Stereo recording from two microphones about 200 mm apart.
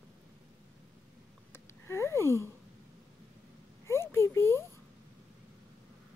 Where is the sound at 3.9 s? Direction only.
10° left (ahead or behind).